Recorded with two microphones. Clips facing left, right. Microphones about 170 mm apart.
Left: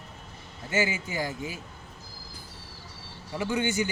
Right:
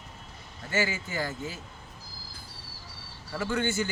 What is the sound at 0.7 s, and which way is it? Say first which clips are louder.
Speech: left 2 dB; 20° left (ahead or behind).